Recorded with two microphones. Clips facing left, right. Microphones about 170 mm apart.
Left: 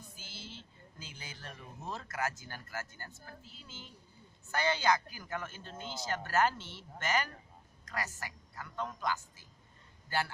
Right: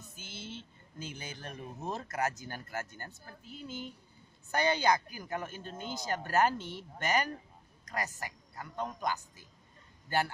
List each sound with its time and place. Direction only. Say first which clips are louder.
0.2 s vehicle: right 6 dB; 20° right (ahead or behind)
0.9 s a man's voice: right 8 dB; 20° right (ahead or behind)